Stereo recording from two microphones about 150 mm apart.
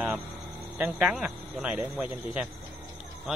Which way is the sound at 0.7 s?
10° right (ahead or behind).